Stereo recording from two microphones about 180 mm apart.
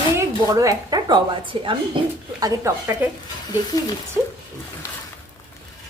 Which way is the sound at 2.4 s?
15° right (ahead or behind).